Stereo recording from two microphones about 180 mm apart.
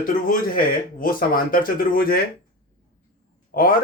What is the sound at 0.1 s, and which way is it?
A man's voice, 50° left (ahead or behind).